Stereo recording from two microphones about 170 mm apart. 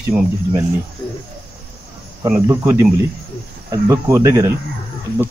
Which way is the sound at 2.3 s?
15° right (ahead or behind).